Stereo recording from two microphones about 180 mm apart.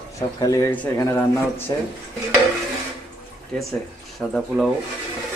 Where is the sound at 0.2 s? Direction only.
20° left (ahead or behind).